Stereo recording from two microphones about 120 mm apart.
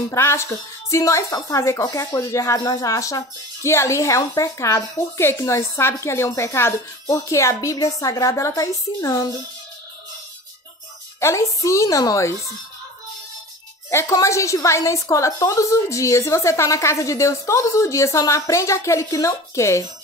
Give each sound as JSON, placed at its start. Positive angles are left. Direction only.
{"t": 0.1, "sound": "speech", "side_deg": 25}
{"t": 11.1, "sound": "speech", "side_deg": 25}
{"t": 13.8, "sound": "speech", "side_deg": 25}